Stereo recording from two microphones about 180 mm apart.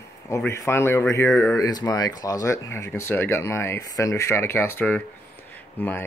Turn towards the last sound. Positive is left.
turn(degrees=10)  # may be behind; listen again after turning